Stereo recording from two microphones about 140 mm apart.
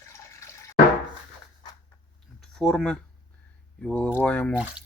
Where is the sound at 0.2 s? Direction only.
20° left (ahead or behind).